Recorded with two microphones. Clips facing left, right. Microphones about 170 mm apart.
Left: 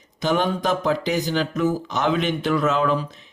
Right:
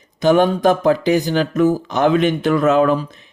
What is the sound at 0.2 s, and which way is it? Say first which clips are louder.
Speech: right 8 dB; 50° right (ahead or behind).